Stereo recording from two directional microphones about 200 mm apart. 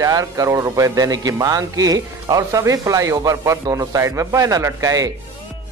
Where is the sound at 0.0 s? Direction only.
15° right (ahead or behind).